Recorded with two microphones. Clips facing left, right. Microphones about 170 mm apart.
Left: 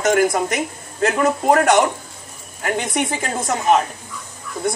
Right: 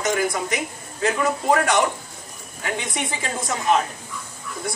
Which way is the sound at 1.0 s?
45° left (ahead or behind).